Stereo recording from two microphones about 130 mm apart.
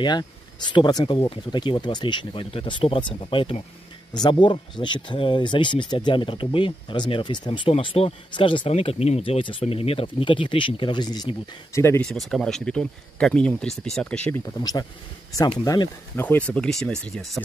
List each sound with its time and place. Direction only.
0.0 s speech: 35° left (ahead or behind)
12.0 s speech: 5° left (ahead or behind)
14.4 s speech: 30° left (ahead or behind)
16.2 s speech: 15° left (ahead or behind)